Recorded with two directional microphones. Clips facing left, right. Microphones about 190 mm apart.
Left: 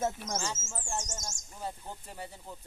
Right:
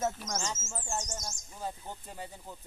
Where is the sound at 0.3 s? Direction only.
30° left (ahead or behind).